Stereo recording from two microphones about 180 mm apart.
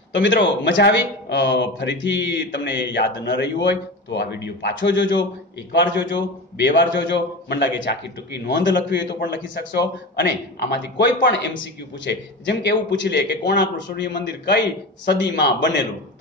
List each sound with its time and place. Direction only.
0.1 s a man's voice: 90° left
9.2 s a man's voice: 60° left (ahead or behind)